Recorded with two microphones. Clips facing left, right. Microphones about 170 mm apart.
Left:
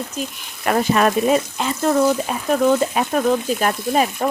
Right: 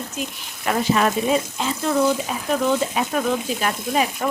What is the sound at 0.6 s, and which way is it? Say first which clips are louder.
Speech: left 3 dB; 55° left (ahead or behind).